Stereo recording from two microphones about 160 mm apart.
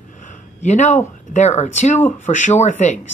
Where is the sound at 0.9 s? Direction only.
45° left (ahead or behind).